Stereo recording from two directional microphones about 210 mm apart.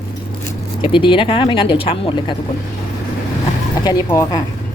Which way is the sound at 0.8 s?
25° left (ahead or behind).